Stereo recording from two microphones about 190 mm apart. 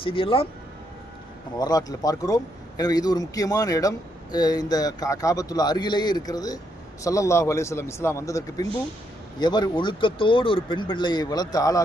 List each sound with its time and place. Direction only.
0.0 s speech: 30° left (ahead or behind)
1.5 s speech: 20° left (ahead or behind)